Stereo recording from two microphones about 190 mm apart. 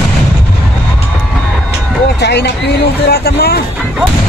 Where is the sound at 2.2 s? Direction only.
60° left (ahead or behind).